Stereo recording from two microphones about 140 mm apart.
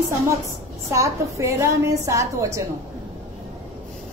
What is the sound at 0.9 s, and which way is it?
A woman's voice, 20° right (ahead or behind).